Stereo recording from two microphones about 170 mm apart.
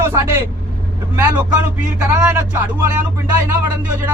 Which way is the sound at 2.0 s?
10° right (ahead or behind).